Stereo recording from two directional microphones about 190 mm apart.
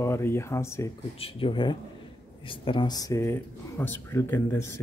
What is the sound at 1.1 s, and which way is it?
Speech, 30° left (ahead or behind).